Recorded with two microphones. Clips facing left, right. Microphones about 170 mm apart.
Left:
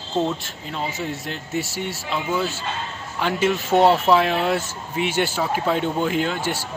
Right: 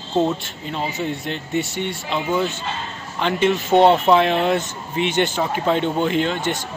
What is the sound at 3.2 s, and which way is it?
A man's voice, 5° left (ahead or behind).